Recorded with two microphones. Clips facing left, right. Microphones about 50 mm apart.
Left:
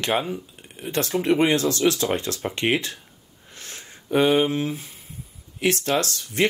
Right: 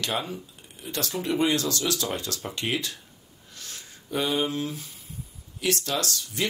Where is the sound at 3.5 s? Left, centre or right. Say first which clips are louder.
Left 3 dB; left.